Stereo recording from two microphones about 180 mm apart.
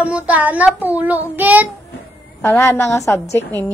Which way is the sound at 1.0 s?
10° right (ahead or behind).